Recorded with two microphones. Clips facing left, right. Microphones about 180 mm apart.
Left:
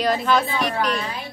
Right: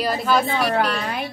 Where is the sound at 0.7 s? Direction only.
65° right (ahead or behind).